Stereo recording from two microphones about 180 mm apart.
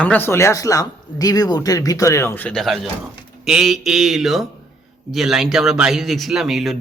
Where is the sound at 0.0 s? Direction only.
10° left (ahead or behind).